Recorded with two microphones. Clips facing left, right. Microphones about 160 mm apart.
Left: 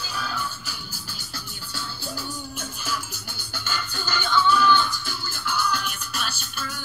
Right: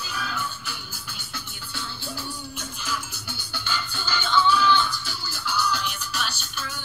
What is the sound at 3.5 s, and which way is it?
Music, 45° left (ahead or behind).